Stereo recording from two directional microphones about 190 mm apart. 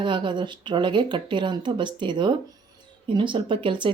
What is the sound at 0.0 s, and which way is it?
Speech, 25° right (ahead or behind).